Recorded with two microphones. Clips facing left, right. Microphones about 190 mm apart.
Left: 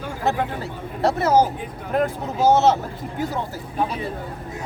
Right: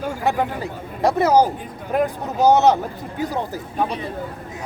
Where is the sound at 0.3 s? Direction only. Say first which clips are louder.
Right 1 dB; 15° right (ahead or behind).